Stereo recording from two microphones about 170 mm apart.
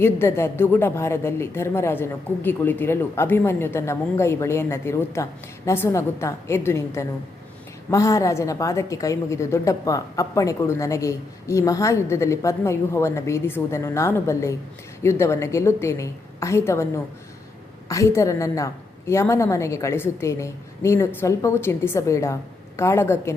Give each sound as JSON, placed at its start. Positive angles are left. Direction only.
{"t": 0.0, "sound": "a woman's voice", "side_deg": 15}